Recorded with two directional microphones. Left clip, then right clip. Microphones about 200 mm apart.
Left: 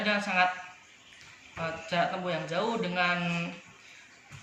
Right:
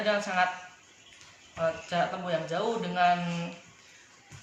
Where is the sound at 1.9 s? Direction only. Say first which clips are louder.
Even; 20° right (ahead or behind).